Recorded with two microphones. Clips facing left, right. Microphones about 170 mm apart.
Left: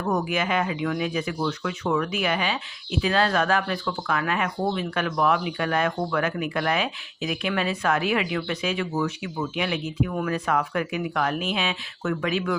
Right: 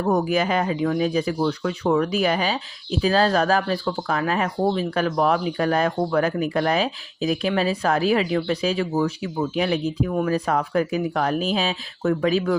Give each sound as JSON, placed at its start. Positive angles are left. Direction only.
{"t": 0.0, "sound": "speech", "side_deg": -35}